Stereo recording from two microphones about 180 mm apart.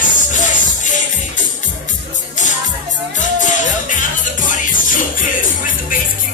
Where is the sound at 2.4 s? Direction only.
45° left (ahead or behind).